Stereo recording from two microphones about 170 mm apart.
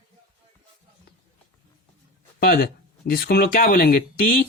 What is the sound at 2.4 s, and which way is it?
Speech, 60° left (ahead or behind).